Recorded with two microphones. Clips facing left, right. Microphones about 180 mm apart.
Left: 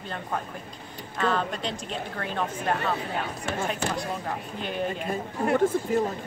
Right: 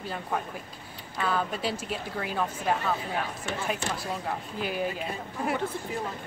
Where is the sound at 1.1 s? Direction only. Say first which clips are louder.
Left 2 dB; 5° right (ahead or behind).